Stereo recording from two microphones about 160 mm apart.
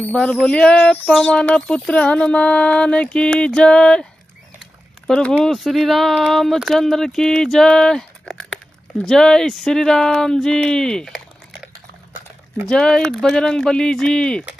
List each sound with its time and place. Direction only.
0.0 s a sound: 10° left (ahead or behind)
5.0 s speech: 5° left (ahead or behind)
12.6 s speech: 5° left (ahead or behind)